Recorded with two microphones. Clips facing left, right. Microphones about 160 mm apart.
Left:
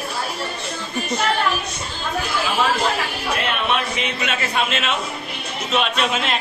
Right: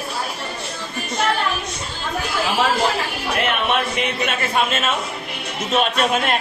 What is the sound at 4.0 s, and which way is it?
Speech, 50° right (ahead or behind).